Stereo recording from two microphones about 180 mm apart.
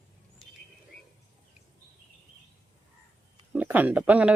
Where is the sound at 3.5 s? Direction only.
10° right (ahead or behind).